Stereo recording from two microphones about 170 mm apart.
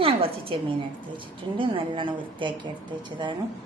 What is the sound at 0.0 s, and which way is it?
A woman's voice, 35° right (ahead or behind).